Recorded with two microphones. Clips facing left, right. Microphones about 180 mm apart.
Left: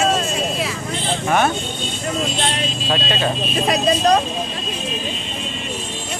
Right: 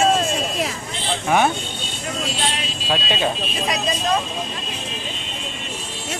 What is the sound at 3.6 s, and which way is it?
Speech, 55° left (ahead or behind).